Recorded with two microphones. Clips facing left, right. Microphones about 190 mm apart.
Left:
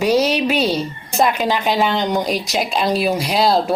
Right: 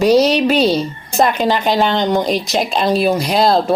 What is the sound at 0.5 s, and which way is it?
Speech, 35° right (ahead or behind).